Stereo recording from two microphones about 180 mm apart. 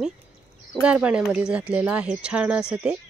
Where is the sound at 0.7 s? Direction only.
5° right (ahead or behind).